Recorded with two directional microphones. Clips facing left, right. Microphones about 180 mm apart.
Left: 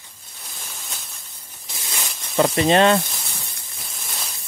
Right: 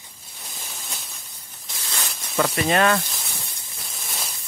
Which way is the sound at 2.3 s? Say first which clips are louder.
Left 4 dB; 25° left (ahead or behind).